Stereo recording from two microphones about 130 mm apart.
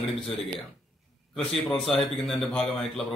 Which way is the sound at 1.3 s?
Centre (ahead or behind).